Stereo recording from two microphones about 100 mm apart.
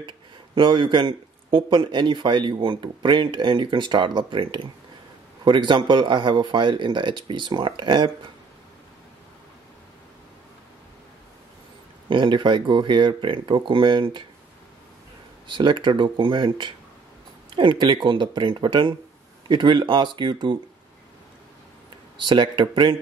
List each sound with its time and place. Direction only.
0.6 s a man's voice: 50° right (ahead or behind)
12.1 s a man's voice: 55° right (ahead or behind)
15.4 s a man's voice: 55° right (ahead or behind)
22.2 s a man's voice: 50° right (ahead or behind)